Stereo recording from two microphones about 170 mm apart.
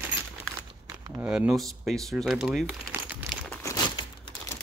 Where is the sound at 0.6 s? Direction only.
20° right (ahead or behind).